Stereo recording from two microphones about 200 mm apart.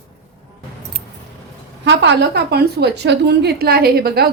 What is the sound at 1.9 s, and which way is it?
A woman's voice, 60° right (ahead or behind).